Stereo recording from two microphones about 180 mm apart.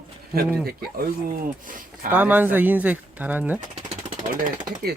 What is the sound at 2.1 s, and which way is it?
Speech, 10° right (ahead or behind).